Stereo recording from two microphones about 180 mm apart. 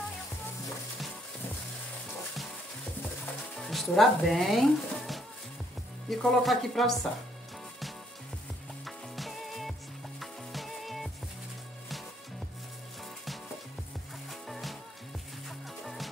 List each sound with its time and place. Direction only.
3.5 s speech: centre (ahead or behind)
8.8 s music: centre (ahead or behind)
14.5 s music: centre (ahead or behind)
15.8 s music: centre (ahead or behind)